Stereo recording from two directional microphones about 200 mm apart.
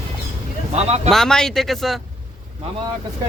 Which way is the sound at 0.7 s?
30° right (ahead or behind).